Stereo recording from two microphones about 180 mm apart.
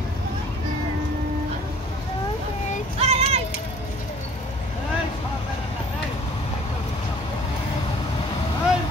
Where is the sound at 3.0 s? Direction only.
35° right (ahead or behind).